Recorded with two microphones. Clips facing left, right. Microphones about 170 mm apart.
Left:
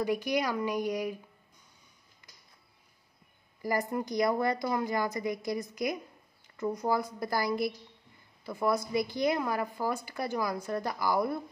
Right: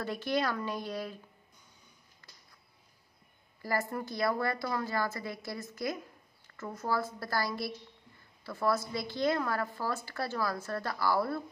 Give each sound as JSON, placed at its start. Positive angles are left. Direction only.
{"t": 0.0, "sound": "a woman's voice", "side_deg": 10}
{"t": 3.6, "sound": "a woman's voice", "side_deg": 15}